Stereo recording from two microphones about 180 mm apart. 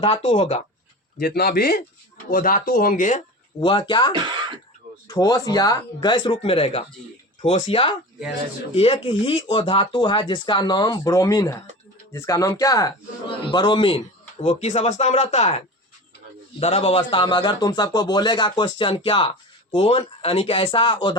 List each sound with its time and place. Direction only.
0.0 s speech: 30° left (ahead or behind)
1.2 s speech: 60° left (ahead or behind)
3.6 s speech: 25° left (ahead or behind)
4.1 s speech: 25° right (ahead or behind)
5.0 s speech: 20° left (ahead or behind)